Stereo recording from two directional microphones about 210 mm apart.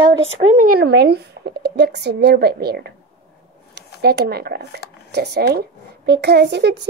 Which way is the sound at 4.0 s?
50° right (ahead or behind).